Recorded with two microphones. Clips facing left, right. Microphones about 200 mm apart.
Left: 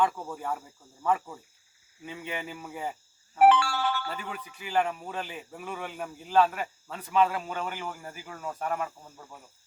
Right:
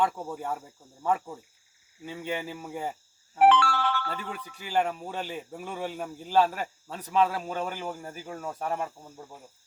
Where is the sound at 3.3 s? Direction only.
5° left (ahead or behind).